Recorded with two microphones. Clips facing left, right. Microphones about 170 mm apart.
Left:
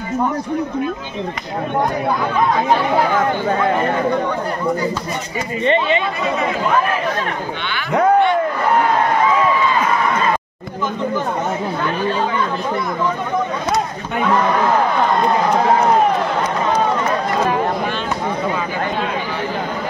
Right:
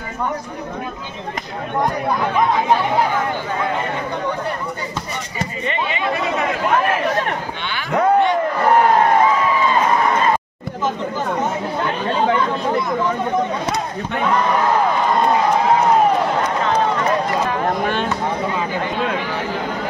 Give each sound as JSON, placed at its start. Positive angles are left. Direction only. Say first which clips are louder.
{"t": 5.7, "sound": "speech", "louder": "left 9 dB", "side_deg": 30}